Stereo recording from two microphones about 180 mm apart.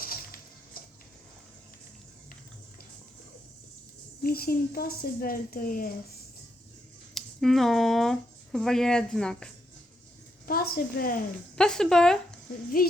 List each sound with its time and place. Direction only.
0.0 s a sound: 55° left (ahead or behind)
4.2 s speech: 55° left (ahead or behind)
7.1 s speech: centre (ahead or behind)
10.4 s a woman's voice: 55° left (ahead or behind)
11.5 s speech: 5° left (ahead or behind)